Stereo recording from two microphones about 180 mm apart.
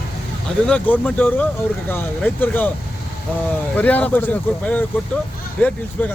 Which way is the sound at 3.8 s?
10° left (ahead or behind).